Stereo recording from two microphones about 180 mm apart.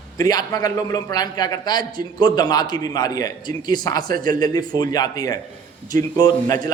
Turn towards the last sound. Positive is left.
turn(degrees=20)  # may be behind; listen again after turning